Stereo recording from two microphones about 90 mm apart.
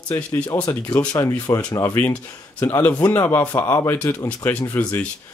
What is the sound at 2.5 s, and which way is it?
Speech, 30° left (ahead or behind).